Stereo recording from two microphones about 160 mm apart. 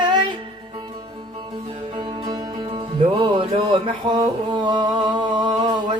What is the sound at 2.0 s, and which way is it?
Music, 30° right (ahead or behind).